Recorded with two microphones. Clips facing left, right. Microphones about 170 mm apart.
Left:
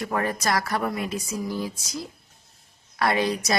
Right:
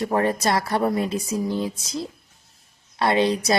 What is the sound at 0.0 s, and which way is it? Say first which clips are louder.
Speech: right 5 dB; 30° right (ahead or behind).